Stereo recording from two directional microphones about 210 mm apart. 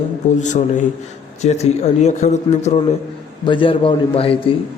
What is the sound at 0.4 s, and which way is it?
A man's voice, 35° left (ahead or behind).